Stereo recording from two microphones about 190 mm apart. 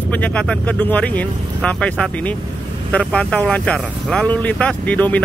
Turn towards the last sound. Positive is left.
turn(degrees=10)  # may be behind; listen again after turning